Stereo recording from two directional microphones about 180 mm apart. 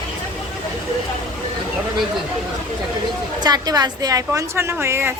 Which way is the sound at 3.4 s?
20° right (ahead or behind).